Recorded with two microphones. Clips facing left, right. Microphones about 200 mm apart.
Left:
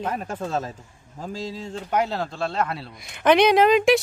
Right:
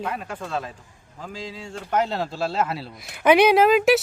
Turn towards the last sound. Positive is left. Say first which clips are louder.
# even
turn(degrees=-5)  # may be behind; listen again after turning